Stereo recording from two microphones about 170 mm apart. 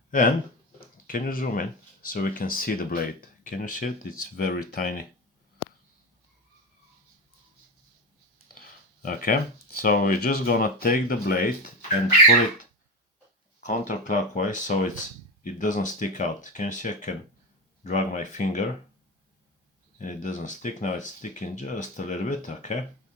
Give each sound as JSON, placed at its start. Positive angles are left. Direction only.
{"t": 0.1, "sound": "speech", "side_deg": 50}
{"t": 8.6, "sound": "speech", "side_deg": 55}
{"t": 13.7, "sound": "speech", "side_deg": 50}
{"t": 20.0, "sound": "speech", "side_deg": 50}